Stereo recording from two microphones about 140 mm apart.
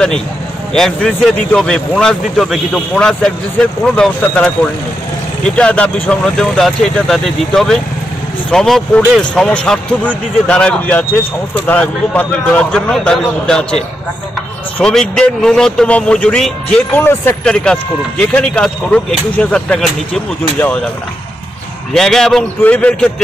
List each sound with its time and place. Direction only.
0.7 s a man's voice: centre (ahead or behind)
5.6 s a man's voice: 10° left (ahead or behind)
14.8 s a man's voice: 5° left (ahead or behind)
16.9 s speech: 15° left (ahead or behind)
17.7 s speech: 5° left (ahead or behind)
21.9 s a man's voice: 5° left (ahead or behind)